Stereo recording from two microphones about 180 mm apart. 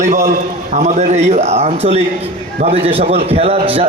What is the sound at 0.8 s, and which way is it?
A man's voice, 40° right (ahead or behind).